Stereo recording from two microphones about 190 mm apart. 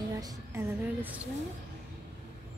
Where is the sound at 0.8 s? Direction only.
10° right (ahead or behind).